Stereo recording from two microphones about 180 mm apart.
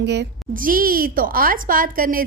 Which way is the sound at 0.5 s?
50° right (ahead or behind).